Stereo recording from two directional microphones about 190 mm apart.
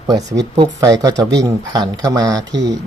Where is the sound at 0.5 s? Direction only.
20° right (ahead or behind).